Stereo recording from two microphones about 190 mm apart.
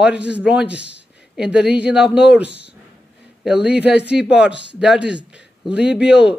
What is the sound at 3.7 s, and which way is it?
Speech, 60° left (ahead or behind).